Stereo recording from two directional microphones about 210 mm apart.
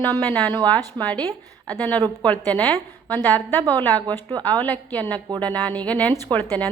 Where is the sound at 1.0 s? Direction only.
5° left (ahead or behind).